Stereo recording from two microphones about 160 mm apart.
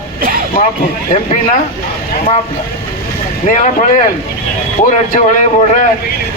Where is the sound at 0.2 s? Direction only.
65° right (ahead or behind).